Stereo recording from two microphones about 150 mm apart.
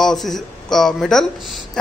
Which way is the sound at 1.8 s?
5° left (ahead or behind).